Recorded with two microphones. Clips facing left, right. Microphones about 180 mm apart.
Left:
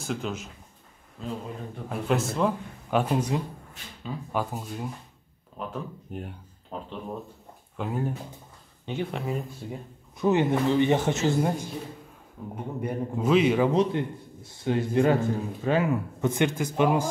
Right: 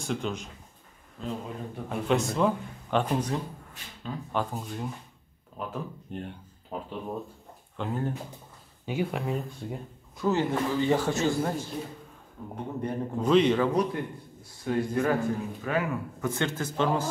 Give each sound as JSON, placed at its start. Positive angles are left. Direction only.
{"t": 0.0, "sound": "a man's voice", "side_deg": 0}
{"t": 1.9, "sound": "a man's voice", "side_deg": 0}
{"t": 7.7, "sound": "speech", "side_deg": 5}
{"t": 8.8, "sound": "a man's voice", "side_deg": -5}
{"t": 10.1, "sound": "a man's voice", "side_deg": 20}
{"t": 12.4, "sound": "a man's voice", "side_deg": 5}
{"t": 13.7, "sound": "a man's voice", "side_deg": 25}